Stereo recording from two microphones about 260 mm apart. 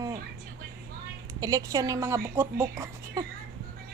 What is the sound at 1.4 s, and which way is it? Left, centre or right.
Speech, centre.